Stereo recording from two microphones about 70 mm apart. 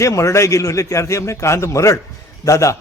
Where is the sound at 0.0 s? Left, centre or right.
Left.